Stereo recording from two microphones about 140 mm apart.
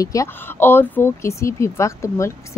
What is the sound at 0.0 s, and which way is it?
A woman's voice, 20° left (ahead or behind).